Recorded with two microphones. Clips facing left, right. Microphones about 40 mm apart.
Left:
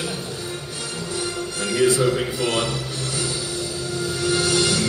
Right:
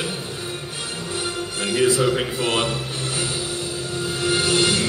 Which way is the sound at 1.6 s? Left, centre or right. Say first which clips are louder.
Even; right.